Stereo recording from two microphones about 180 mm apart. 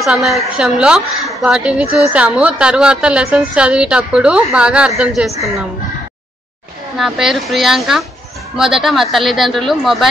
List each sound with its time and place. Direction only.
0.0 s a woman's voice: centre (ahead or behind)
7.0 s a woman's voice: centre (ahead or behind)